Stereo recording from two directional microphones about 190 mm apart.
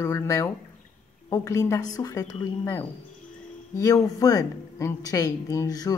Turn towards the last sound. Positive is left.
turn(degrees=20)  # may be behind; listen again after turning